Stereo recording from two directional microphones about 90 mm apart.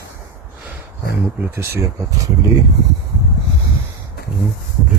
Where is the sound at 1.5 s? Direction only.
25° right (ahead or behind).